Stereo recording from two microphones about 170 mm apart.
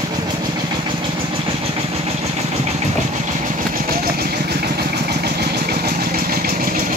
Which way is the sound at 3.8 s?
65° right (ahead or behind).